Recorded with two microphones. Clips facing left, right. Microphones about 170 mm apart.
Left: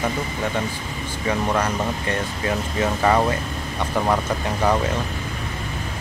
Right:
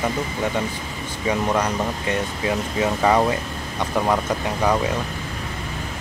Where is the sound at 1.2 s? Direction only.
15° right (ahead or behind).